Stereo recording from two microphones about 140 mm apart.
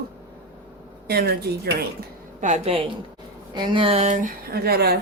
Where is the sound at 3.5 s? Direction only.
35° right (ahead or behind); by 4.8 s 90° right.